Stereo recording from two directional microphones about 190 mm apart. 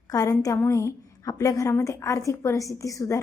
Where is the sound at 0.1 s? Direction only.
15° left (ahead or behind).